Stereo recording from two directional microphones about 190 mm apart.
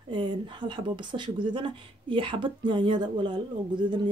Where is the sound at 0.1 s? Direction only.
25° right (ahead or behind).